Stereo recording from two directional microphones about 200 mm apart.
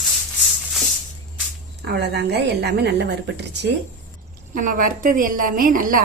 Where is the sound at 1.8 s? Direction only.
55° right (ahead or behind).